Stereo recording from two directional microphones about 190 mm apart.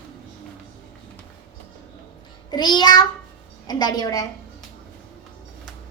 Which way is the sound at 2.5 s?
20° left (ahead or behind).